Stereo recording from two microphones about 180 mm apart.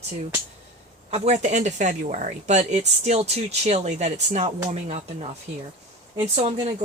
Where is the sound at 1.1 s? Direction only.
35° right (ahead or behind).